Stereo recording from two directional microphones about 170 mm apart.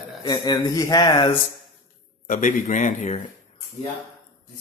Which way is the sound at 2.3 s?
50° left (ahead or behind).